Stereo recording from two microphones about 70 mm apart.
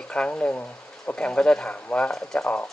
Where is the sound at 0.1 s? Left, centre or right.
Centre.